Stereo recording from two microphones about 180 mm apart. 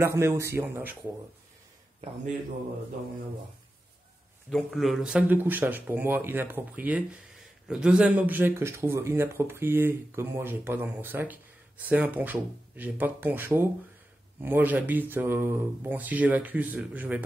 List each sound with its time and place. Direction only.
0.0 s speech: 15° right (ahead or behind)
4.5 s speech: 5° left (ahead or behind)